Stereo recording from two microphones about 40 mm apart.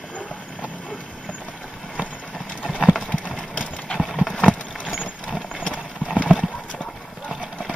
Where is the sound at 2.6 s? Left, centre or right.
Right.